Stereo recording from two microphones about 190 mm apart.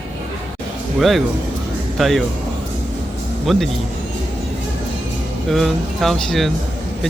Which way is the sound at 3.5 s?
Centre (ahead or behind).